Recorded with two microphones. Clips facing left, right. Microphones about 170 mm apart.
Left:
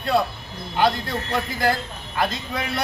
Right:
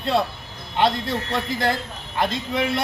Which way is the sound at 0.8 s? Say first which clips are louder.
Even; 25° right (ahead or behind).